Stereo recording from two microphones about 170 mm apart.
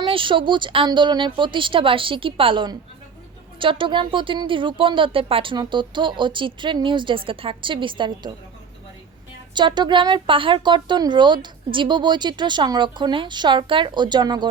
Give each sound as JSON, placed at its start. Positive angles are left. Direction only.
{"t": 0.0, "sound": "speech", "side_deg": -30}
{"t": 9.6, "sound": "speech", "side_deg": -25}